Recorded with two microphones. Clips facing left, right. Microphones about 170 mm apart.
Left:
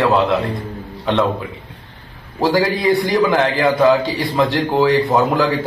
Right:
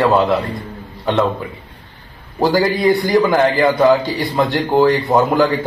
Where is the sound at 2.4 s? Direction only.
Centre (ahead or behind).